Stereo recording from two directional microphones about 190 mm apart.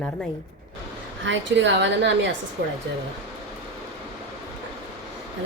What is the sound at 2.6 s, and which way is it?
Speech, 50° right (ahead or behind).